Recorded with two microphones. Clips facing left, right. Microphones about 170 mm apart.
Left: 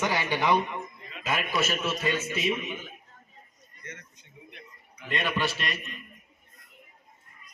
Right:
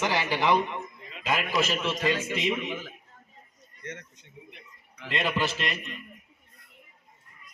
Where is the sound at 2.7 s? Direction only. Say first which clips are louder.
Right 3 dB; 90° right.